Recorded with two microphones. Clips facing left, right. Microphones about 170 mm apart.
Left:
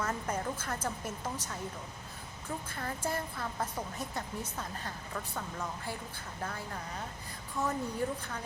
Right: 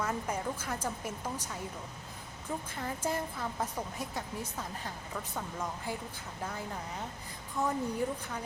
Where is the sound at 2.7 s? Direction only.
15° right (ahead or behind).